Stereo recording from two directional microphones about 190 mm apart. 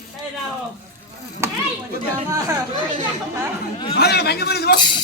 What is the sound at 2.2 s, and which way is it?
Speech, 15° right (ahead or behind).